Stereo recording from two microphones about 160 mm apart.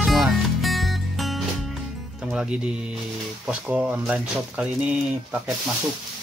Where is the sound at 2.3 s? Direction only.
5° right (ahead or behind).